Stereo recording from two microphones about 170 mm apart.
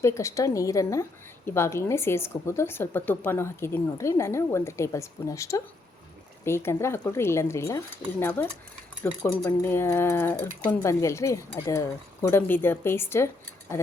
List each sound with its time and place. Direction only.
0.0 s speech: 15° left (ahead or behind)